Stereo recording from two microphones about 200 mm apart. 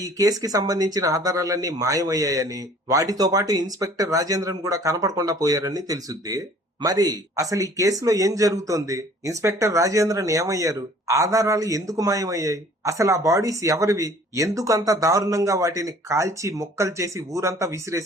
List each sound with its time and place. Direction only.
0.0 s speech: 15° right (ahead or behind)